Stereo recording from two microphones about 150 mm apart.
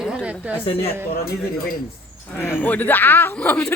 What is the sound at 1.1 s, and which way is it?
Speech, 90° left.